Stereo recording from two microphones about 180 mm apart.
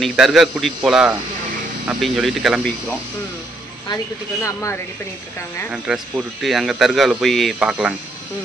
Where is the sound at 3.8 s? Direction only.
20° left (ahead or behind).